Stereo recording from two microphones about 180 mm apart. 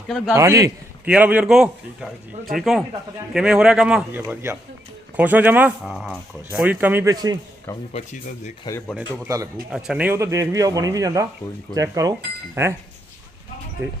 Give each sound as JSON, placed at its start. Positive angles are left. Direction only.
{"t": 0.3, "sound": "a man's voice", "side_deg": -15}
{"t": 7.7, "sound": "speech", "side_deg": 15}
{"t": 9.0, "sound": "a man's voice", "side_deg": -15}
{"t": 9.7, "sound": "a man's voice", "side_deg": -5}
{"t": 13.8, "sound": "a man's voice", "side_deg": -15}